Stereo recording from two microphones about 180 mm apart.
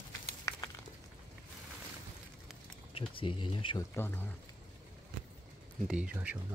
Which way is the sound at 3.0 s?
30° left (ahead or behind).